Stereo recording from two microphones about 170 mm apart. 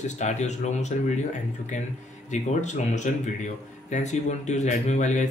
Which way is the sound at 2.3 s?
45° left (ahead or behind).